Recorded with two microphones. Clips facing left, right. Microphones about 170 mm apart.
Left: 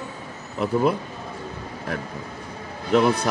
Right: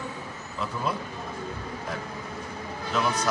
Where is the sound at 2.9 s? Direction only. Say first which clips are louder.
Left 9 dB; 60° left (ahead or behind).